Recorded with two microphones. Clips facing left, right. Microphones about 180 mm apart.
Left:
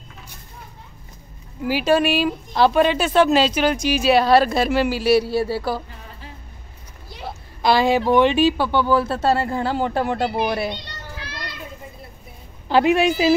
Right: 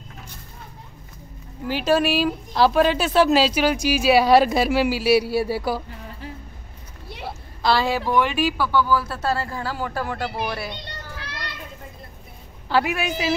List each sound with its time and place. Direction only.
1.7 s a woman's voice: centre (ahead or behind)
7.6 s speech: 15° left (ahead or behind)
12.6 s speech: 20° left (ahead or behind)